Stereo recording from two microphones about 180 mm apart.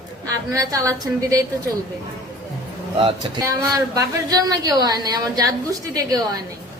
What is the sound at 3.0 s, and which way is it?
Speech, 25° right (ahead or behind).